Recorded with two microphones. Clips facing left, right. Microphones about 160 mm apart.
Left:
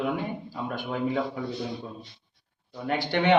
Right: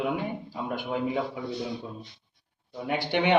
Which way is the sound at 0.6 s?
15° right (ahead or behind).